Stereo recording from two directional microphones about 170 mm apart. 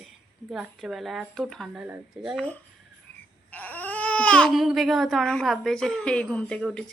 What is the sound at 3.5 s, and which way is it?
Speech, 10° left (ahead or behind).